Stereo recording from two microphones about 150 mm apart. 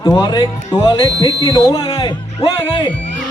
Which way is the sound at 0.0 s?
25° left (ahead or behind).